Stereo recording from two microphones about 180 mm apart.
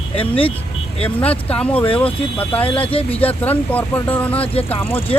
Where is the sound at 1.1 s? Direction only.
10° left (ahead or behind).